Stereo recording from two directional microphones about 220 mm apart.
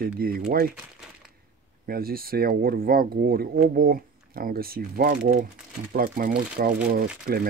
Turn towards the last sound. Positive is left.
turn(degrees=-45)  # may be behind; listen again after turning